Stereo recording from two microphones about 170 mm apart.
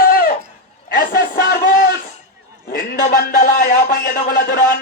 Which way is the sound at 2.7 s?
55° left (ahead or behind).